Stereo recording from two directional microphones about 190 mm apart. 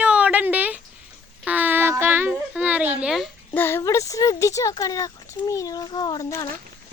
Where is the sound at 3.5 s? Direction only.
10° left (ahead or behind).